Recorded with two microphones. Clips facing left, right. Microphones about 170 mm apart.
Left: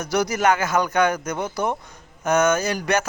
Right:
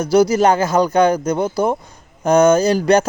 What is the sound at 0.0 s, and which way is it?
Speech, 30° right (ahead or behind).